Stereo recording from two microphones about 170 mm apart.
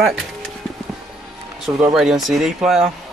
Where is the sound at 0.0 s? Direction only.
Centre (ahead or behind).